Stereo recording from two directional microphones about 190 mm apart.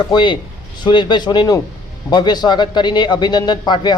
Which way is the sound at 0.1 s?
25° left (ahead or behind).